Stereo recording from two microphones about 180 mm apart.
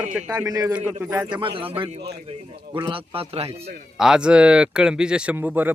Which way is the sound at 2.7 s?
30° right (ahead or behind).